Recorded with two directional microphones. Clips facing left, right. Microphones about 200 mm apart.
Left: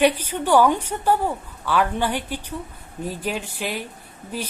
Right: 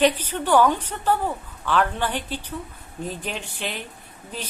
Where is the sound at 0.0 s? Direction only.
10° left (ahead or behind).